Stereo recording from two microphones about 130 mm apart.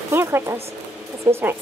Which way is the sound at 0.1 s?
20° right (ahead or behind).